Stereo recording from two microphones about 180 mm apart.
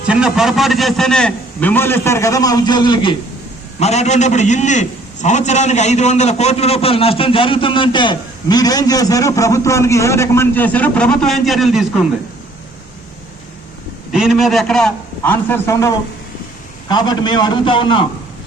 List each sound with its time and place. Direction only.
0.1 s a man's voice: 5° right (ahead or behind); by 3.2 s 25° left (ahead or behind)
3.8 s a man's voice: 35° left (ahead or behind); by 12.0 s centre (ahead or behind)
14.1 s a man's voice: centre (ahead or behind); by 15.9 s 15° left (ahead or behind)
16.9 s a man's voice: 25° left (ahead or behind)